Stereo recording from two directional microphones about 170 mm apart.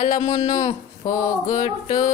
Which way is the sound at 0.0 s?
45° left (ahead or behind).